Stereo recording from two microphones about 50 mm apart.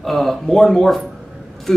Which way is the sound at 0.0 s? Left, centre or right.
Centre.